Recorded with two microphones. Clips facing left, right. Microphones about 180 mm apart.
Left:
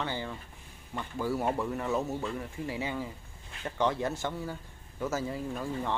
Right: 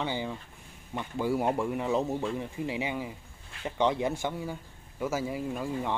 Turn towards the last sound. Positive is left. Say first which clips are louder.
# right 2 dB
turn(degrees=-10)  # may be behind; listen again after turning